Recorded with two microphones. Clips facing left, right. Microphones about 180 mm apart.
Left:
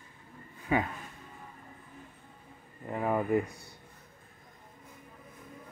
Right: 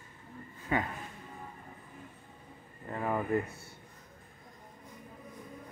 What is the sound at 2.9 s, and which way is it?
Speech, 10° left (ahead or behind).